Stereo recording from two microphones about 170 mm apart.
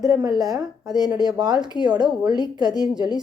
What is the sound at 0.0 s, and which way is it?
Speech, 25° right (ahead or behind).